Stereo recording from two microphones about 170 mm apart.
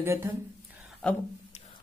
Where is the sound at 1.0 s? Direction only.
5° left (ahead or behind).